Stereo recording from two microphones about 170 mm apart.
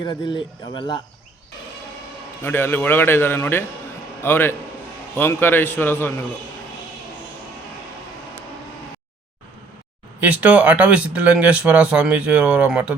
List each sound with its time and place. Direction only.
0.0 s speech: 25° left (ahead or behind)
2.4 s a man's voice: 10° left (ahead or behind)
10.2 s speech: 10° right (ahead or behind)